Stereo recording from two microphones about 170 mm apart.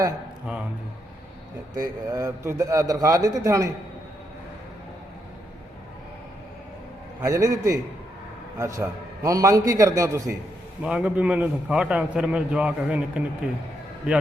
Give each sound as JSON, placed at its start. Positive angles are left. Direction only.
{"t": 1.7, "sound": "a man's voice", "side_deg": -20}
{"t": 7.2, "sound": "a man's voice", "side_deg": -20}
{"t": 10.8, "sound": "a man's voice", "side_deg": -5}